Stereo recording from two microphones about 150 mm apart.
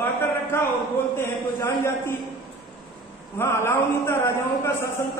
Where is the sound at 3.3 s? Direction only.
15° left (ahead or behind).